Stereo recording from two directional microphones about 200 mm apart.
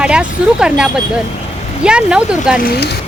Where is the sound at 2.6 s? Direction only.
50° left (ahead or behind).